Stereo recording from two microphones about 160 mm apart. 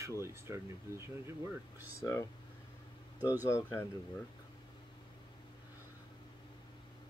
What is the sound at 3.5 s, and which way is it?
Speech, 15° left (ahead or behind).